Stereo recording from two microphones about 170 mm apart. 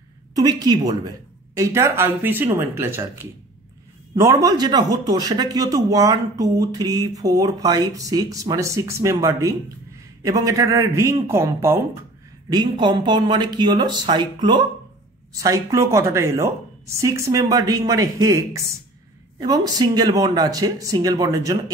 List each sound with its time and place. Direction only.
0.4 s a man's voice: 25° right (ahead or behind)
12.4 s a man's voice: 25° right (ahead or behind)